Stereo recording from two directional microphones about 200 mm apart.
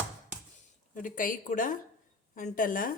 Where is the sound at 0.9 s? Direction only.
45° left (ahead or behind).